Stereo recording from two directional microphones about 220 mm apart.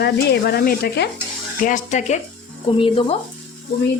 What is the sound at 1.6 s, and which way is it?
Speech, 35° left (ahead or behind).